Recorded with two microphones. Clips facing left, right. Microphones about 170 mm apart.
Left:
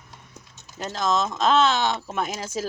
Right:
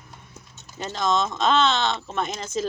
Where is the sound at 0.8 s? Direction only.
Centre (ahead or behind).